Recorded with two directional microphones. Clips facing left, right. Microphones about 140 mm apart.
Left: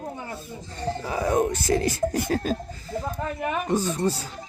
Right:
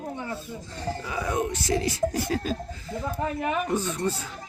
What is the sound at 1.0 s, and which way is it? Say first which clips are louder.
Speech: left 6 dB; 40° left (ahead or behind).